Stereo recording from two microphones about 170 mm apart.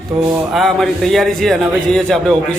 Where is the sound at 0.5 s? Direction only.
Centre (ahead or behind).